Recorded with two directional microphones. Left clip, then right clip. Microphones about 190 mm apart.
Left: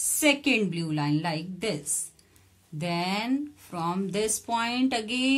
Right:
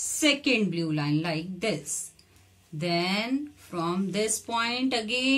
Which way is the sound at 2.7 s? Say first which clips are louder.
Right 2 dB; 50° left (ahead or behind).